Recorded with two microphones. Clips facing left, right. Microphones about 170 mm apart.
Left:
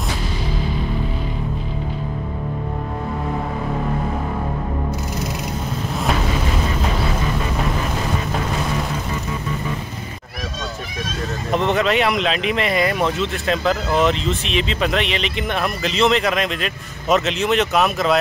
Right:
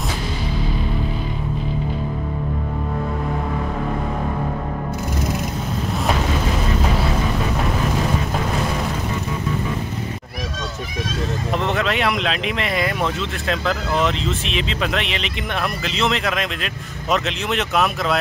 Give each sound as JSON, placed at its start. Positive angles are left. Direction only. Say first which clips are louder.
{"t": 11.5, "sound": "speech", "louder": "left 5 dB", "side_deg": 0}